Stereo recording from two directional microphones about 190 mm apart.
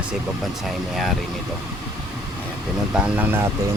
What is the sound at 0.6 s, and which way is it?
Speech, centre (ahead or behind).